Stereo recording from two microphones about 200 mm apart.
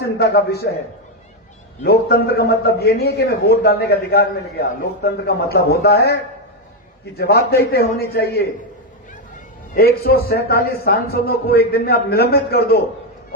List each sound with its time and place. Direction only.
0.0 s a man's voice: 55° left (ahead or behind)
1.8 s a man's voice: 50° left (ahead or behind)
7.2 s a man's voice: 55° left (ahead or behind)
9.7 s a man's voice: 50° left (ahead or behind)